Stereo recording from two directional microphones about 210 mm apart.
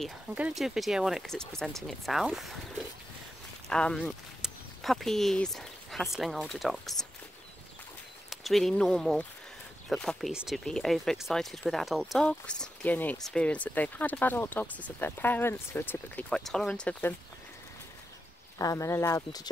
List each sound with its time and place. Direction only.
0.0 s speech: 5° right (ahead or behind)
3.6 s speech: 5° left (ahead or behind)
8.3 s speech: centre (ahead or behind)
18.6 s speech: 15° left (ahead or behind)